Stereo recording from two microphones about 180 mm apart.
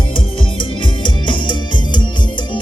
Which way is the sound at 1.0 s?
25° left (ahead or behind).